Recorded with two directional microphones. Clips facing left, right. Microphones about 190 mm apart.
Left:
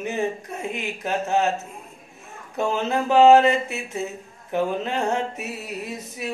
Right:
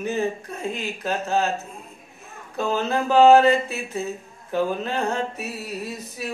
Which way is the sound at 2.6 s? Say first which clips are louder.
Even; 20° left (ahead or behind).